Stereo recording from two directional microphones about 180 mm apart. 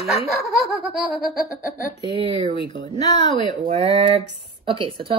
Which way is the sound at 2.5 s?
30° left (ahead or behind).